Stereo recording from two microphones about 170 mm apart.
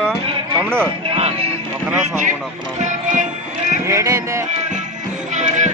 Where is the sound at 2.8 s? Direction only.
45° right (ahead or behind).